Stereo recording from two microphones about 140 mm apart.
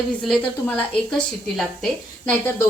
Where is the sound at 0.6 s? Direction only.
10° left (ahead or behind).